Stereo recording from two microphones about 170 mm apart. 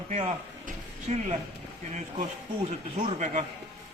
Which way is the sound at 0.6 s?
40° right (ahead or behind).